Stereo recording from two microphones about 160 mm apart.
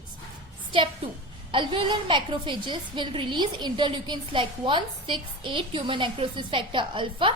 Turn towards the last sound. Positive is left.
turn(degrees=-30)  # may be behind; listen again after turning